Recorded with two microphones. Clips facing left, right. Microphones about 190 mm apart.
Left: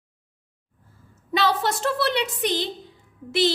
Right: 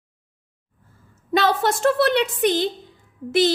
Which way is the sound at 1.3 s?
50° right (ahead or behind).